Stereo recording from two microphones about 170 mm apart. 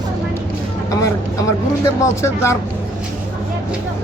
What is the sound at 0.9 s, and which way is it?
Speech, 20° left (ahead or behind).